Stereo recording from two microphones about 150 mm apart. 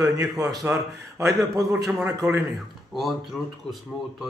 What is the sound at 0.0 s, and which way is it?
Speech, 25° right (ahead or behind).